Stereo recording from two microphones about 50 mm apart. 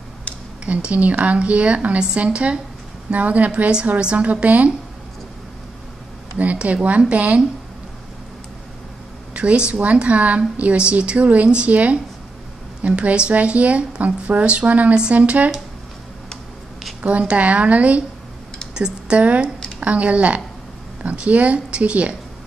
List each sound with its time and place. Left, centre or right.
0.7 s a woman's voice: right
6.3 s a woman's voice: right
9.3 s a woman's voice: right
17.0 s a woman's voice: right